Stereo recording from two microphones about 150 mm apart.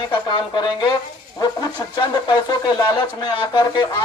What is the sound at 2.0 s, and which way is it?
Speech, 30° left (ahead or behind).